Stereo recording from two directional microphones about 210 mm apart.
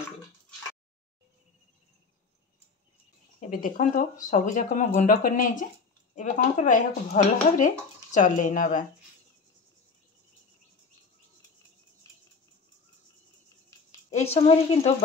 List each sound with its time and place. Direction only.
3.3 s speech: 40° left (ahead or behind)
14.1 s a woman's voice: 30° left (ahead or behind)